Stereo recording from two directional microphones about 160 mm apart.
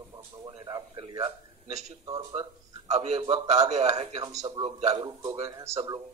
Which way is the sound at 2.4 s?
45° right (ahead or behind).